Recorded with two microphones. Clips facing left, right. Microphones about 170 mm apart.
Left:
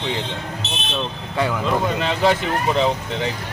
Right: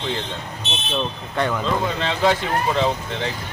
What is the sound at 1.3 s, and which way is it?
Speech, 10° left (ahead or behind).